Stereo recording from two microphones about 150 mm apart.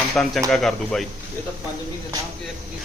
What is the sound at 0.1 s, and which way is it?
Speech, 5° left (ahead or behind).